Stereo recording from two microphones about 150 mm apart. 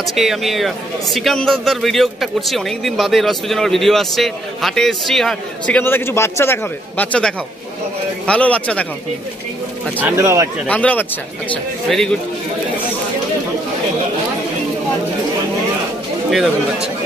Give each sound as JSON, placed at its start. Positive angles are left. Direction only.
{"t": 0.0, "sound": "a man's voice", "side_deg": 0}
{"t": 9.9, "sound": "speech", "side_deg": -15}
{"t": 10.7, "sound": "a man's voice", "side_deg": 10}